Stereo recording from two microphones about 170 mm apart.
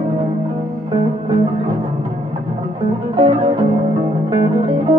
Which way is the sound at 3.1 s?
35° right (ahead or behind).